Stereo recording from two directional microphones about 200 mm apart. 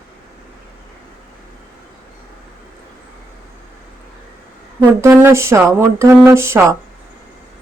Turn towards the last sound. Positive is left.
turn(degrees=-15)  # may be behind; listen again after turning